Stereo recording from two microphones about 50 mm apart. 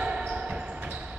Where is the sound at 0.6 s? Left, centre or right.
Right.